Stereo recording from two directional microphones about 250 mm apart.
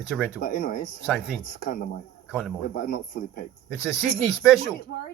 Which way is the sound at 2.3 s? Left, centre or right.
Centre.